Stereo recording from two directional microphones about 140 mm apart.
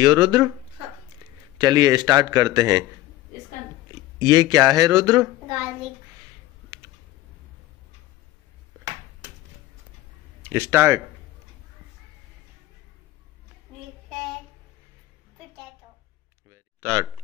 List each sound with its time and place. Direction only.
0.0 s a man's voice: 30° right (ahead or behind)
1.6 s a man's voice: 30° right (ahead or behind)
3.9 s speech: 25° right (ahead or behind)
10.5 s a man's voice: 15° right (ahead or behind)
16.4 s a sound: 15° right (ahead or behind)